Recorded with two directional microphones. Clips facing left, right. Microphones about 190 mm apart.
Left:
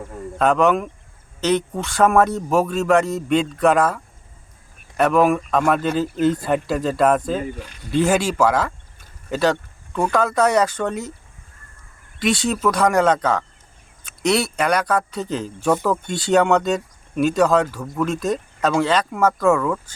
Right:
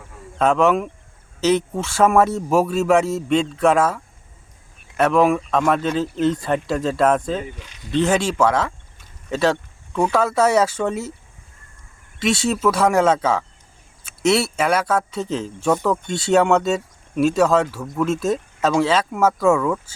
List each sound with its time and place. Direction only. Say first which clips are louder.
0.3 s speech: even; centre (ahead or behind)
7.5 s speech: left 6 dB; 50° left (ahead or behind)
7.9 s speech: even; 5° left (ahead or behind)
12.2 s speech: right 1 dB; centre (ahead or behind)